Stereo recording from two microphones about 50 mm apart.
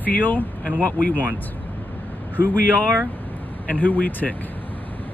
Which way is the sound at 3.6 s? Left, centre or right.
Left.